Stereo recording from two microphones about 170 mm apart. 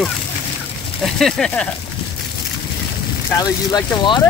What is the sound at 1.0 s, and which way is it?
Speech, centre (ahead or behind).